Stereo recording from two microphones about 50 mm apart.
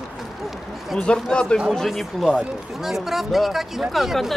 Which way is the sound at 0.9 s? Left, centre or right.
Centre.